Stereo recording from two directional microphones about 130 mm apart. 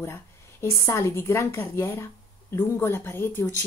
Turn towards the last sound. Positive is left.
turn(degrees=15)  # may be behind; listen again after turning